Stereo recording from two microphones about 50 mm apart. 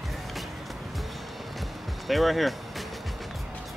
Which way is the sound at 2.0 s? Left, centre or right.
Centre.